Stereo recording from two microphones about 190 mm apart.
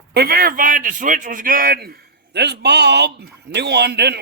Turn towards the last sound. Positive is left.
turn(degrees=-60)  # may be behind; listen again after turning